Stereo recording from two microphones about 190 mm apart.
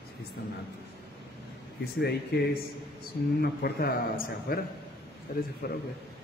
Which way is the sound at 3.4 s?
55° left (ahead or behind).